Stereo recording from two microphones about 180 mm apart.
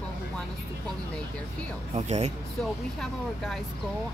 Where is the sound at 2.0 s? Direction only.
40° right (ahead or behind).